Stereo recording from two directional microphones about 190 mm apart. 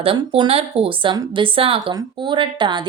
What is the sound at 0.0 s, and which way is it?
A woman's voice, 30° right (ahead or behind).